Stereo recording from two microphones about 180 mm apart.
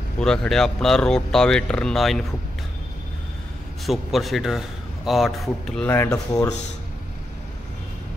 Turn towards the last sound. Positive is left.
turn(degrees=20)  # may be behind; listen again after turning